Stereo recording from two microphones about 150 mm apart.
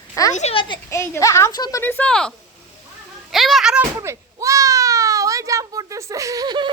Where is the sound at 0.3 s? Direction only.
40° left (ahead or behind).